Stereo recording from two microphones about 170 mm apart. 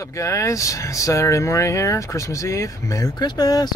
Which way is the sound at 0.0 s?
20° left (ahead or behind).